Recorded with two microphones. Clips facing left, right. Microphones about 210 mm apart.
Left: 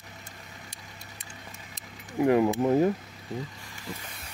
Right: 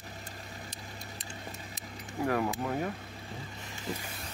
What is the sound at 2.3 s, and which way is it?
Speech, 20° left (ahead or behind).